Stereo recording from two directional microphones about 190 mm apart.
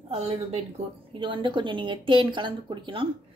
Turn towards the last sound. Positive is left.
turn(degrees=-25)  # may be behind; listen again after turning